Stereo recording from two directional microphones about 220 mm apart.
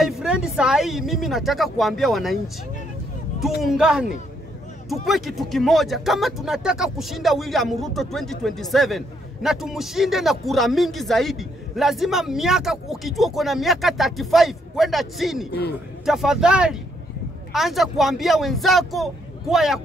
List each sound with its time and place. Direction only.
0.0 s speech: centre (ahead or behind)
3.6 s speech: 5° right (ahead or behind)